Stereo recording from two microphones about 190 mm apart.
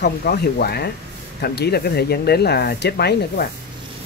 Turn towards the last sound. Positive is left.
turn(degrees=60)  # may be behind; listen again after turning